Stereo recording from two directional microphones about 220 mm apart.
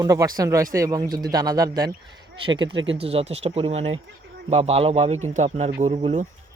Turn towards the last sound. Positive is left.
turn(degrees=-30)  # may be behind; listen again after turning